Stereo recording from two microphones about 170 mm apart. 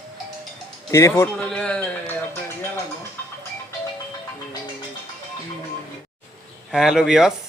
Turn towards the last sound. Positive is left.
turn(degrees=0)  # may be behind; listen again after turning